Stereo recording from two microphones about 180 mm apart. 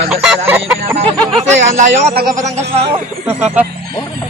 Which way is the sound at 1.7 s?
40° right (ahead or behind).